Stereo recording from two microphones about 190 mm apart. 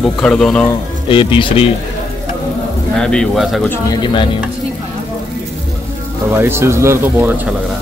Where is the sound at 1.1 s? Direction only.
25° left (ahead or behind).